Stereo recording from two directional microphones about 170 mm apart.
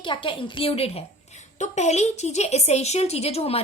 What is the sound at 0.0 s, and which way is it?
A woman's voice, 30° left (ahead or behind).